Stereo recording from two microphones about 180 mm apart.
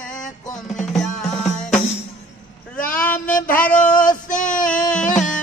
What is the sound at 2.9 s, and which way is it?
Speech, 10° left (ahead or behind).